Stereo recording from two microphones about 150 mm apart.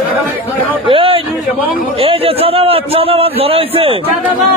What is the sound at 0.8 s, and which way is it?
A man's voice, 35° right (ahead or behind).